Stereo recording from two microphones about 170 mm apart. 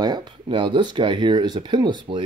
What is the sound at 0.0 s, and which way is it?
Speech, 25° right (ahead or behind).